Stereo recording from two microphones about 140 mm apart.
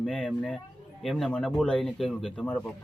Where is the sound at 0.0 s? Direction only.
5° left (ahead or behind).